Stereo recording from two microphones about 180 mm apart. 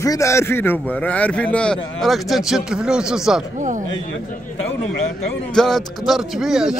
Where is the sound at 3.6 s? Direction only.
45° right (ahead or behind).